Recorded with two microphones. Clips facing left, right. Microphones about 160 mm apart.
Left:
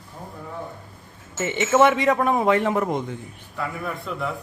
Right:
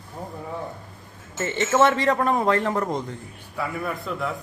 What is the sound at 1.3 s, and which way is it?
Speech, 15° left (ahead or behind).